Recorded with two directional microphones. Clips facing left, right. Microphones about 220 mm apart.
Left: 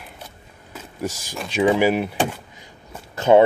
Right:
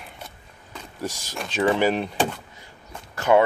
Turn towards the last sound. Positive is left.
turn(degrees=25)  # may be behind; listen again after turning